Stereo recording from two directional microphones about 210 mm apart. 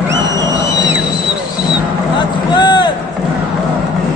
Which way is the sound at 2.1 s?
20° left (ahead or behind).